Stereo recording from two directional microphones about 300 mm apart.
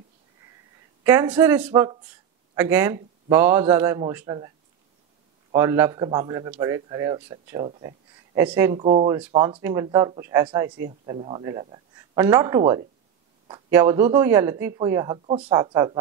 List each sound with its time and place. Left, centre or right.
1.0 s speech: centre
5.5 s a man's voice: centre